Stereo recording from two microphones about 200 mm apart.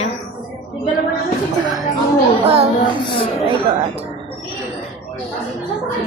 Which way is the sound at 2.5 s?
30° right (ahead or behind).